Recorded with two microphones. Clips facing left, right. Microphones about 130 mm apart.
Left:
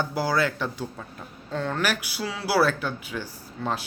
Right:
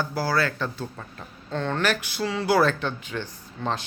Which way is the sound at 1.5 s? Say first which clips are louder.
Right 2 dB; 5° left (ahead or behind).